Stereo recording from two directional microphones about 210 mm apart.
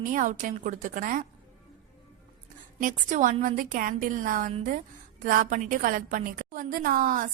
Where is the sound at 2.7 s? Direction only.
40° right (ahead or behind).